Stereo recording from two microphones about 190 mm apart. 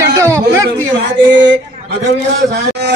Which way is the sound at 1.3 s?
70° right (ahead or behind).